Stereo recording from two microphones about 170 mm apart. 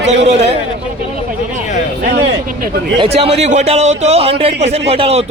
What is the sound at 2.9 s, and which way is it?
A man's voice, 30° right (ahead or behind).